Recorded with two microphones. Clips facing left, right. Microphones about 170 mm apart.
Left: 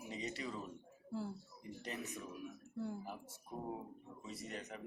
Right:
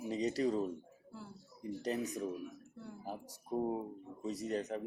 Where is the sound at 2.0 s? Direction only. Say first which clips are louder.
Right 8 dB; 40° right (ahead or behind).